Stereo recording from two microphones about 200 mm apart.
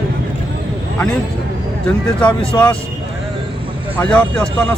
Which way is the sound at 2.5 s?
5° left (ahead or behind).